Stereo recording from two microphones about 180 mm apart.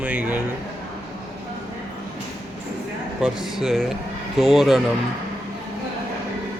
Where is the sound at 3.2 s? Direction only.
Centre (ahead or behind).